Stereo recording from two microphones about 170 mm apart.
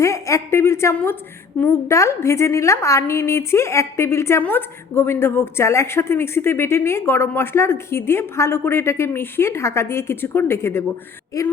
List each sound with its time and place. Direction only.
0.0 s a woman's voice: 20° left (ahead or behind)